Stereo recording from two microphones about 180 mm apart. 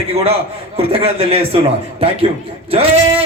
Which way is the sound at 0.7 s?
35° right (ahead or behind).